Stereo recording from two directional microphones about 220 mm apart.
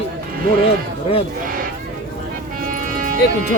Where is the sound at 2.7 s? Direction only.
35° right (ahead or behind).